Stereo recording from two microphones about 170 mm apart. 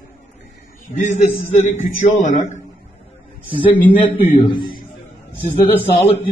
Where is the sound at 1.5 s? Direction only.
45° left (ahead or behind).